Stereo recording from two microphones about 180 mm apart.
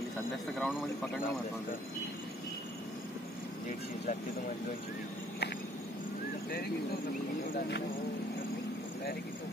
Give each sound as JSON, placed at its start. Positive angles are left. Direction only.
{"t": 0.6, "sound": "a man's voice", "side_deg": -5}
{"t": 6.5, "sound": "speech", "side_deg": 60}